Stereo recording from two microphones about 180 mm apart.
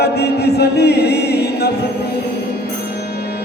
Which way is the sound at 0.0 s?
65° left (ahead or behind).